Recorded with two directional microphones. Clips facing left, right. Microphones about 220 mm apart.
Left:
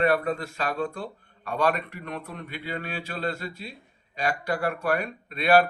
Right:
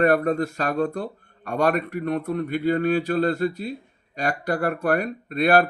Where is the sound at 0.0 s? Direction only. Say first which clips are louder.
Right 5 dB; 45° right (ahead or behind).